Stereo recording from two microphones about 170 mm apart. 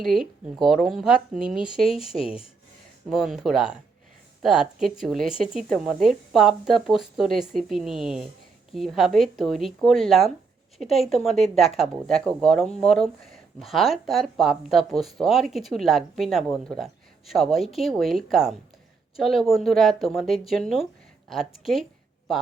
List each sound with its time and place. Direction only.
0.0 s speech: centre (ahead or behind)
2.0 s speech: 35° left (ahead or behind)
3.1 s speech: centre (ahead or behind)